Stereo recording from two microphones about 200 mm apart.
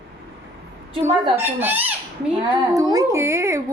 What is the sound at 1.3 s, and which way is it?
Speech, 10° right (ahead or behind).